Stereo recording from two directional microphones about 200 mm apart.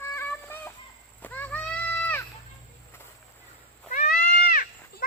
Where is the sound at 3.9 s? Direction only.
40° left (ahead or behind).